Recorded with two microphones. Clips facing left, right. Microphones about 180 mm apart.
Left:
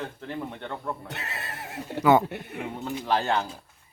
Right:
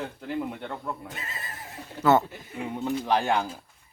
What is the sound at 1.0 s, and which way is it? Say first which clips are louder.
Speech: left 2 dB; 70° left (ahead or behind).